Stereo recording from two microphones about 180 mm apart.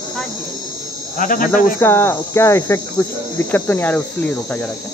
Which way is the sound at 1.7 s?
15° left (ahead or behind).